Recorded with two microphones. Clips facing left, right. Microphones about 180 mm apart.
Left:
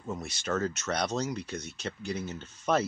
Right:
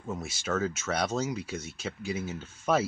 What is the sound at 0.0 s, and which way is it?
Speech, centre (ahead or behind).